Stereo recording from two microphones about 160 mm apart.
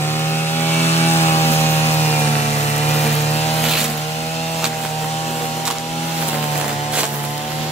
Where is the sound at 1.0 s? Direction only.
15° left (ahead or behind).